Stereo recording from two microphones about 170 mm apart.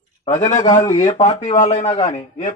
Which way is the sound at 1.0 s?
40° left (ahead or behind).